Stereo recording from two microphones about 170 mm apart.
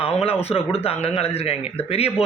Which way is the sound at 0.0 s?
35° left (ahead or behind).